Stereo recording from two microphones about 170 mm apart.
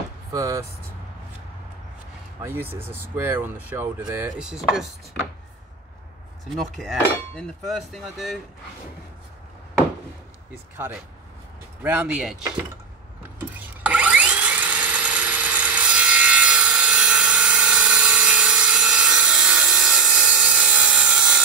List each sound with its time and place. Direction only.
0.3 s speech: 20° right (ahead or behind)
2.4 s speech: 15° right (ahead or behind)
4.1 s hammer: 10° right (ahead or behind)
6.5 s hammer: centre (ahead or behind)
11.8 s hammer: 5° right (ahead or behind)
13.8 s a sound: 10° right (ahead or behind)